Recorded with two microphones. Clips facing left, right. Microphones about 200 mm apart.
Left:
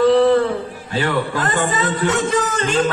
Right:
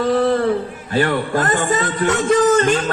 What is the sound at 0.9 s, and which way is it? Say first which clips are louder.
Speech: right 3 dB; 50° right (ahead or behind).